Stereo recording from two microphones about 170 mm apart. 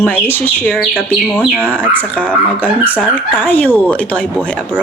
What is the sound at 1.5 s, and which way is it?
Speech, 10° right (ahead or behind).